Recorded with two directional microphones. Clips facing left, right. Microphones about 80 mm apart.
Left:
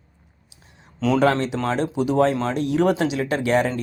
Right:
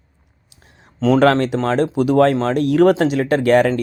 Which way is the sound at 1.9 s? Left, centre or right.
Right.